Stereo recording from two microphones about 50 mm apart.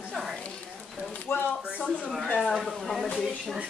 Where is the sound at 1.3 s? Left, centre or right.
Left.